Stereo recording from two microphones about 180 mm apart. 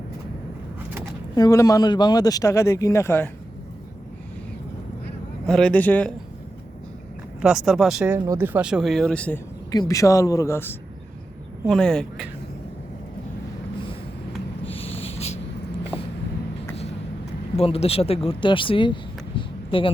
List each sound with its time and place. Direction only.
1.4 s speech: 20° left (ahead or behind)
5.5 s speech: 5° left (ahead or behind)
7.4 s speech: centre (ahead or behind)
8.1 s speech: 15° right (ahead or behind); by 9.4 s 5° left (ahead or behind)
9.7 s speech: 20° left (ahead or behind); by 12.3 s centre (ahead or behind)
14.6 s snort: 30° left (ahead or behind)
17.6 s speech: 35° left (ahead or behind)
19.4 s a sound: 30° left (ahead or behind)